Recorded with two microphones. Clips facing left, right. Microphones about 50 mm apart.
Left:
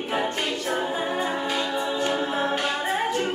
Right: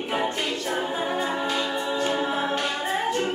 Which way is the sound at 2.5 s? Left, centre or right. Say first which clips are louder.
Left 1 dB; centre.